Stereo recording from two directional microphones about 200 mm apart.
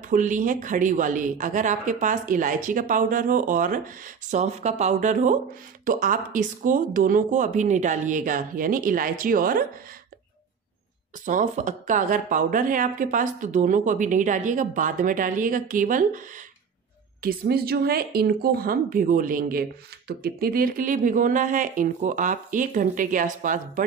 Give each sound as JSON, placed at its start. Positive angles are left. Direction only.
{"t": 0.1, "sound": "a woman's voice", "side_deg": -40}
{"t": 11.2, "sound": "a woman's voice", "side_deg": -40}
{"t": 17.2, "sound": "a woman's voice", "side_deg": -50}